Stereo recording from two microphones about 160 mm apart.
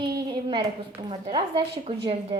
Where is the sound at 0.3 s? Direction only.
25° right (ahead or behind).